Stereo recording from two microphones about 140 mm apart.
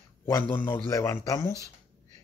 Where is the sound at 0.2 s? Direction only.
20° left (ahead or behind).